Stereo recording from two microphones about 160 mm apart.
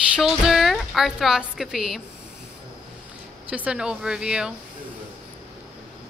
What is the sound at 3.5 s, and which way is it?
A woman's voice, 10° right (ahead or behind).